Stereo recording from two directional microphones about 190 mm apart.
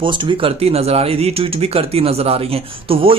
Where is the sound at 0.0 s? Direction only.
25° right (ahead or behind).